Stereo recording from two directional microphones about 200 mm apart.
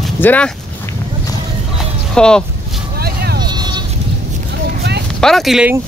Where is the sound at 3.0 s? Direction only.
50° right (ahead or behind).